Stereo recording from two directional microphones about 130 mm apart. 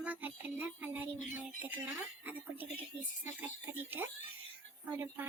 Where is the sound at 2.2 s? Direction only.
10° right (ahead or behind).